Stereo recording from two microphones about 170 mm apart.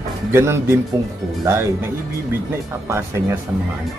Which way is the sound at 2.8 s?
15° right (ahead or behind).